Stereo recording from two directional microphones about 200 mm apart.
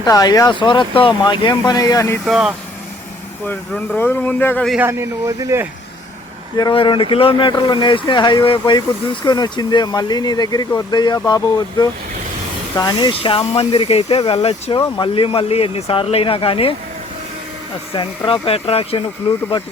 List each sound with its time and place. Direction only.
0.0 s speech: 20° left (ahead or behind)
2.2 s speech: centre (ahead or behind)
4.8 s speech: 10° right (ahead or behind)
6.6 s speech: 25° left (ahead or behind)
17.9 s speech: 25° left (ahead or behind)